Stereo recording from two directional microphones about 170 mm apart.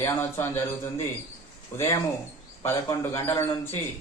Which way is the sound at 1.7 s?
15° left (ahead or behind).